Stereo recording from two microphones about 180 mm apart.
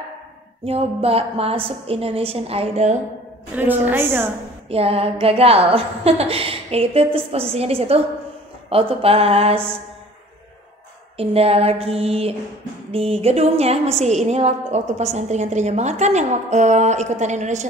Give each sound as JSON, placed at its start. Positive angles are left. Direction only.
{"t": 0.7, "sound": "a woman's voice", "side_deg": -35}
{"t": 3.5, "sound": "a woman's voice", "side_deg": -10}
{"t": 4.6, "sound": "a woman's voice", "side_deg": -35}
{"t": 11.1, "sound": "a woman's voice", "side_deg": -35}